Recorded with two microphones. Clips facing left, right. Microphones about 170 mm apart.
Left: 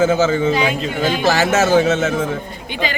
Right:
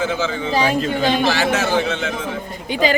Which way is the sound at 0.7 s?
40° right (ahead or behind).